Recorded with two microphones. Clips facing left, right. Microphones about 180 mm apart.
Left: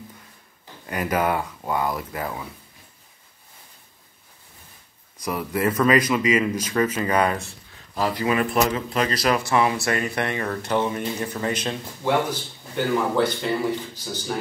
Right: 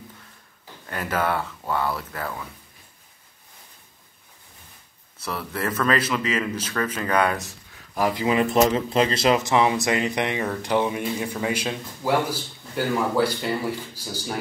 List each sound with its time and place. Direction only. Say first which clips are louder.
0.8 s a man's voice: left 2 dB; 10° left (ahead or behind)
5.2 s a man's voice: left 5 dB; 15° left (ahead or behind)
7.9 s speech: right 1 dB; 15° right (ahead or behind)